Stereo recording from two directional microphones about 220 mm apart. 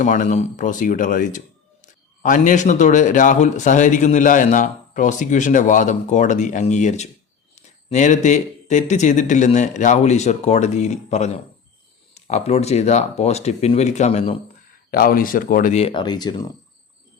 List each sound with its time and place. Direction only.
0.0 s a man's voice: 35° left (ahead or behind)
14.8 s a man's voice: 45° left (ahead or behind); by 16.5 s 20° left (ahead or behind)